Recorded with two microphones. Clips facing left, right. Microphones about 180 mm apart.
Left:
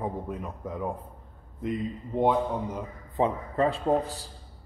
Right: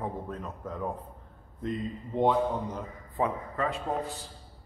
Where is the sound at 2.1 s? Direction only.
10° left (ahead or behind).